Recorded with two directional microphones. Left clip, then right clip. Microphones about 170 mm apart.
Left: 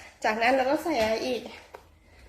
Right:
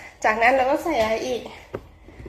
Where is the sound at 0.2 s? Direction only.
25° left (ahead or behind).